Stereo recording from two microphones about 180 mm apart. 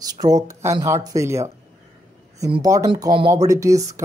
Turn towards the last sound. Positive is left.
turn(degrees=-15)  # may be behind; listen again after turning